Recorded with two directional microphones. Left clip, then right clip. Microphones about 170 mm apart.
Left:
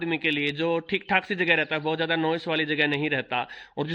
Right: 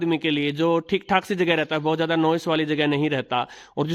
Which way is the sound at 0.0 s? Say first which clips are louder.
Right 3 dB; 35° right (ahead or behind).